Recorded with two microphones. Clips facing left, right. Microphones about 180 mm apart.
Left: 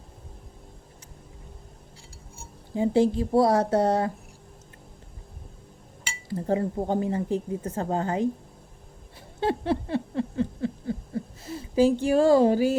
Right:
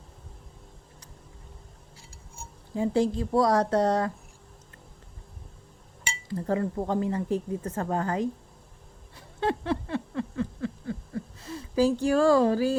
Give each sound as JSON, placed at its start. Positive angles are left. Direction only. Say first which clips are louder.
{"t": 2.7, "sound": "speech", "louder": "left 3 dB", "side_deg": 30}
{"t": 6.2, "sound": "speech", "louder": "left 2 dB", "side_deg": 25}
{"t": 9.4, "sound": "a sound", "louder": "left 2 dB", "side_deg": 30}
{"t": 12.1, "sound": "speech", "louder": "left 2 dB", "side_deg": 25}